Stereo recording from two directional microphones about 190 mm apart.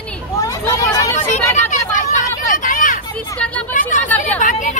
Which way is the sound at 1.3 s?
40° left (ahead or behind).